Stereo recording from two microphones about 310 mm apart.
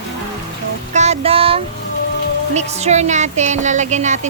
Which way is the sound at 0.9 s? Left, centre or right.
Right.